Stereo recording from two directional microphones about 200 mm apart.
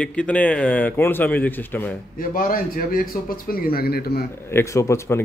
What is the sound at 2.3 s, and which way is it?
A man's voice, 45° left (ahead or behind).